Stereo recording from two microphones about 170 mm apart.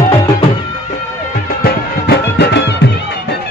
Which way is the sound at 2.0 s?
80° left.